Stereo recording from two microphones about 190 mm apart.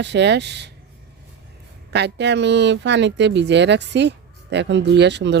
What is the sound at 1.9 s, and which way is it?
Speech, 65° right (ahead or behind).